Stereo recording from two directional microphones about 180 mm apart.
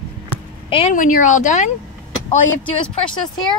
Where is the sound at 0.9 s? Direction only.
45° left (ahead or behind).